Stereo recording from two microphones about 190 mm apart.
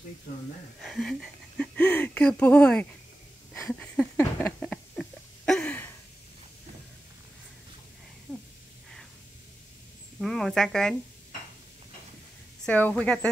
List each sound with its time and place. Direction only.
0.8 s a sound: centre (ahead or behind)
10.1 s speech: centre (ahead or behind)
12.6 s a woman's voice: 10° left (ahead or behind)